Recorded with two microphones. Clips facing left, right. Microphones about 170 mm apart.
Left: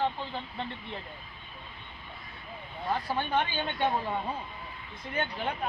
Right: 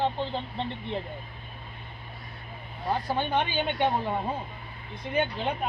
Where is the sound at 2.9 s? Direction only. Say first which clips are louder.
Right 2 dB; 20° right (ahead or behind).